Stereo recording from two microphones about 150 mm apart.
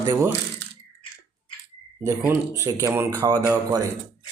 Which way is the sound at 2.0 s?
15° right (ahead or behind).